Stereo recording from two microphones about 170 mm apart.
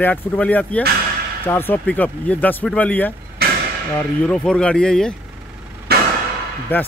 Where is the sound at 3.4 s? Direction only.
65° right (ahead or behind).